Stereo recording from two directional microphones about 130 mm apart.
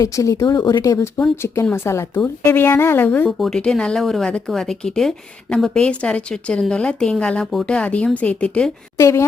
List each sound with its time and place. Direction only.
0.0 s speech: 25° left (ahead or behind)
3.2 s speech: centre (ahead or behind)
9.0 s speech: 25° left (ahead or behind)